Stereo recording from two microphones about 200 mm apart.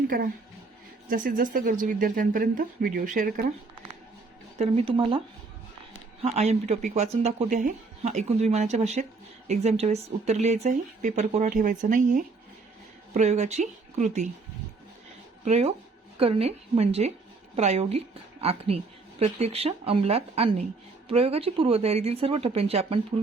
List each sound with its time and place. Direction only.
1.1 s speech: 45° right (ahead or behind)
4.5 s speech: 30° right (ahead or behind)
6.2 s speech: 35° right (ahead or behind)
15.4 s speech: 35° right (ahead or behind)